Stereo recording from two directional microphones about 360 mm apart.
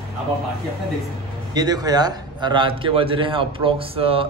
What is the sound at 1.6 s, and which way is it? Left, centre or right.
A man's voice, centre.